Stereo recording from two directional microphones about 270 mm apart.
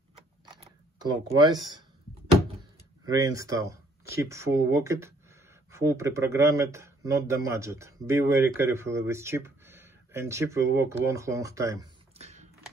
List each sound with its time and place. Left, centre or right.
0.5 s a sound: centre
3.1 s speech: centre
12.2 s typing: right